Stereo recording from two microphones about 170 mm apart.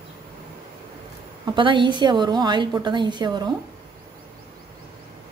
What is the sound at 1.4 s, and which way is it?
A woman's voice, 30° right (ahead or behind).